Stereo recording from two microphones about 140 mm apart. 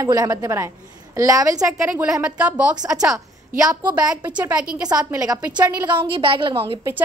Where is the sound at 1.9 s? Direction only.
5° right (ahead or behind).